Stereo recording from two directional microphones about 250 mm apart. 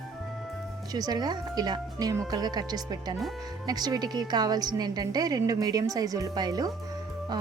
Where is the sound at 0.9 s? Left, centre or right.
Centre.